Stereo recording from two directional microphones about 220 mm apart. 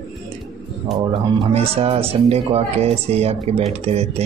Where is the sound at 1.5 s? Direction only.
25° right (ahead or behind).